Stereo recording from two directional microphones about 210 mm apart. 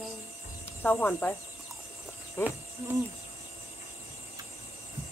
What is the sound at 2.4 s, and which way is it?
Speech, 10° left (ahead or behind).